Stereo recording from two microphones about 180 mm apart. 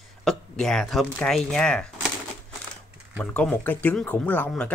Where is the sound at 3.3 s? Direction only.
10° left (ahead or behind).